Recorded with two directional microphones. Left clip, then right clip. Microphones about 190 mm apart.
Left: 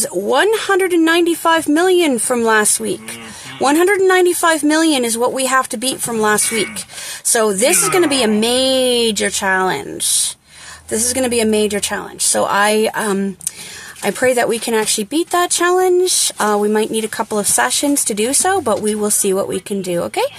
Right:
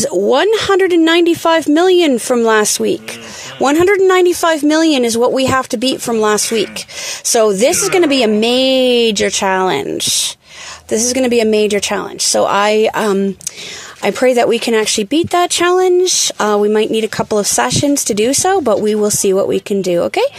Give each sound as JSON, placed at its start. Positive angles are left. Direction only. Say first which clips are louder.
{"t": 0.0, "sound": "speech", "louder": "right 3 dB", "side_deg": -30}